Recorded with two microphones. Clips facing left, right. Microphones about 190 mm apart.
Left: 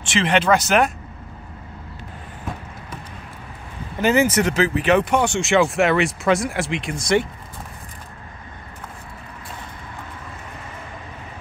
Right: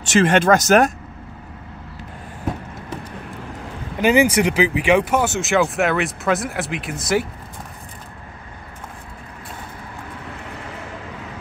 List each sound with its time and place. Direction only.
0.0 s speech: 45° right (ahead or behind)
4.0 s speech: 15° right (ahead or behind)